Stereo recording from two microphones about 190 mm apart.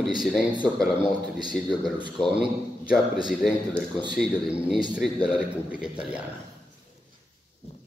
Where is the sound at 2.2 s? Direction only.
5° right (ahead or behind).